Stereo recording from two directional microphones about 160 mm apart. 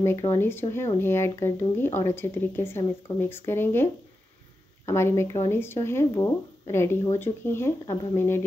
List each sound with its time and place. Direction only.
0.0 s speech: 15° left (ahead or behind)
7.8 s speech: 25° left (ahead or behind)
8.2 s speech: 15° left (ahead or behind)